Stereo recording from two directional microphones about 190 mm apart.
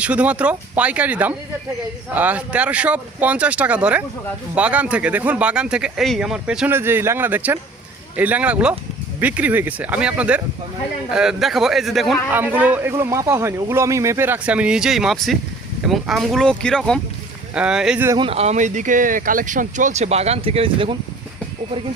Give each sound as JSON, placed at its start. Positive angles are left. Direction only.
{"t": 0.0, "sound": "speech", "side_deg": -5}
{"t": 12.3, "sound": "speech", "side_deg": -10}
{"t": 18.2, "sound": "speech", "side_deg": -30}